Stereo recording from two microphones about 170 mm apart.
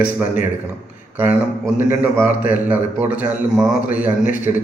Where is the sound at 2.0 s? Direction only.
10° right (ahead or behind).